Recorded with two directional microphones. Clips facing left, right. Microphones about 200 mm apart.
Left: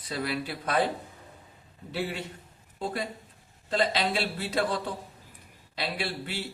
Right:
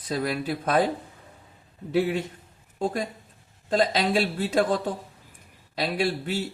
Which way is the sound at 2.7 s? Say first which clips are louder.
Right 5 dB; 45° right (ahead or behind).